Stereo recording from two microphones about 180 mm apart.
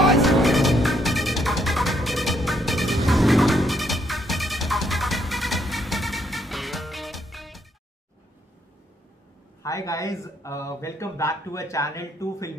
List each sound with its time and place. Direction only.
0.0 s music: centre (ahead or behind)
9.6 s speech: 15° left (ahead or behind)